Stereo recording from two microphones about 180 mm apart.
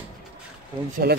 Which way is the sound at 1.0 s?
60° right (ahead or behind).